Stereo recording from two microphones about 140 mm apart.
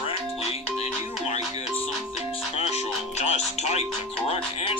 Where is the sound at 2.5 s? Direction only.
50° left (ahead or behind).